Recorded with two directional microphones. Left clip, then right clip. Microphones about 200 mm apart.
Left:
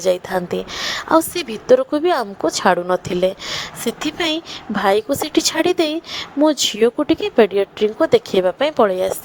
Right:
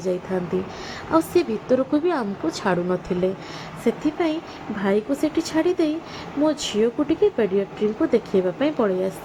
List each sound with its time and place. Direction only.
0.8 s a woman's voice: 50° left (ahead or behind)